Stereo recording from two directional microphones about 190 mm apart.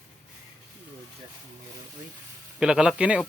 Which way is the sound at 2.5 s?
5° right (ahead or behind).